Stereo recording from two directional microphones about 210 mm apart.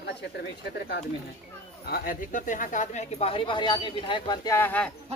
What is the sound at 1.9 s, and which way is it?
Speech, 40° left (ahead or behind).